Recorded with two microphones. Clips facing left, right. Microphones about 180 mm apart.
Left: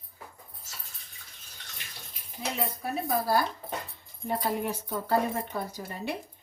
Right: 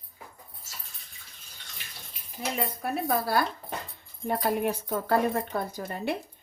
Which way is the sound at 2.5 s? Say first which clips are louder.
Right 2 dB; 60° right (ahead or behind).